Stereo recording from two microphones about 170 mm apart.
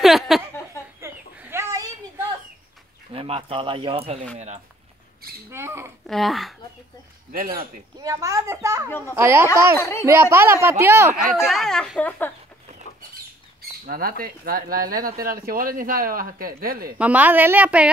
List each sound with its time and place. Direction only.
0.0 s a sound: centre (ahead or behind)
1.0 s chicken: 15° right (ahead or behind)
3.1 s speech: 35° right (ahead or behind)
5.5 s a sound: 15° right (ahead or behind)
6.0 s speech: centre (ahead or behind)
7.3 s speech: 60° right (ahead or behind)
8.0 s a woman's voice: 20° right (ahead or behind)
9.8 s speech: 15° left (ahead or behind)
10.0 s speech: 15° right (ahead or behind)
11.4 s speech: centre (ahead or behind)
13.6 s speech: 60° right (ahead or behind)
17.0 s speech: 10° right (ahead or behind)